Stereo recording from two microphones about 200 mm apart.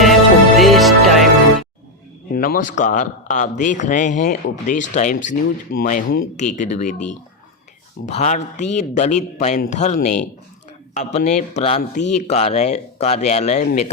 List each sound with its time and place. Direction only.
0.0 s music: centre (ahead or behind)
2.3 s a man's voice: 45° left (ahead or behind)
8.0 s a man's voice: 35° left (ahead or behind)